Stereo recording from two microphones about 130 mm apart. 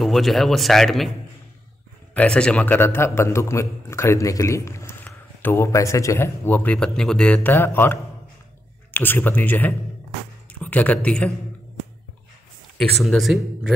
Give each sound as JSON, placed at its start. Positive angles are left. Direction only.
{"t": 0.0, "sound": "speech", "side_deg": 0}
{"t": 2.1, "sound": "a man's voice", "side_deg": 10}
{"t": 12.7, "sound": "speech", "side_deg": 0}